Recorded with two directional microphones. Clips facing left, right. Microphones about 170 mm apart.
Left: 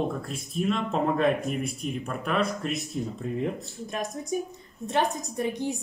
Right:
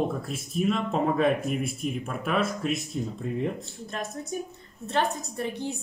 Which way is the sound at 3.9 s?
15° left (ahead or behind).